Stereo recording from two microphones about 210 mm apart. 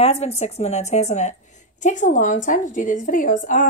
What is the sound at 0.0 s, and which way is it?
A woman's voice, 30° left (ahead or behind).